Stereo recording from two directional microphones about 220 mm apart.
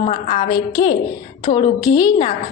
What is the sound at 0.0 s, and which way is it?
A woman's voice, 30° left (ahead or behind).